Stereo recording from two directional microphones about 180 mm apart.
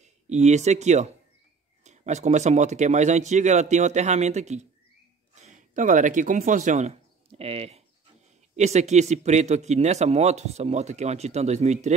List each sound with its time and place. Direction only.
0.0 s speech: 40° right (ahead or behind)